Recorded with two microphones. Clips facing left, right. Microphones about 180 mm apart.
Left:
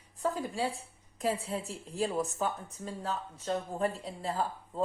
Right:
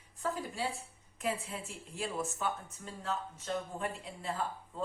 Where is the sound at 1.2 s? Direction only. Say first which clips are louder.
Left 5 dB; 35° left (ahead or behind).